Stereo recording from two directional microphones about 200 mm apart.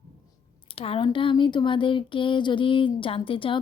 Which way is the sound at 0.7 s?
30° left (ahead or behind).